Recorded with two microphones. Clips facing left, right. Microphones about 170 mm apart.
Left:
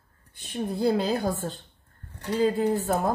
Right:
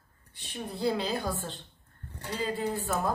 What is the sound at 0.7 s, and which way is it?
Speech, 50° left (ahead or behind).